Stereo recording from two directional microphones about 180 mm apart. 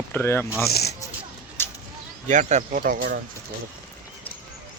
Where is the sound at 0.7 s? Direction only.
60° left (ahead or behind).